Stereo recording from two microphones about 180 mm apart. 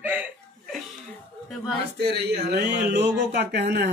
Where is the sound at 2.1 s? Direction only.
65° right (ahead or behind).